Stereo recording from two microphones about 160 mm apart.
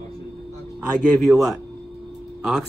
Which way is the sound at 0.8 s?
5° right (ahead or behind).